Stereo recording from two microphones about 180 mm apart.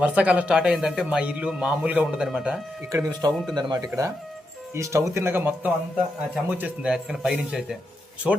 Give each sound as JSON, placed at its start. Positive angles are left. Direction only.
{"t": 0.0, "sound": "speech", "side_deg": -5}
{"t": 2.9, "sound": "speech", "side_deg": -20}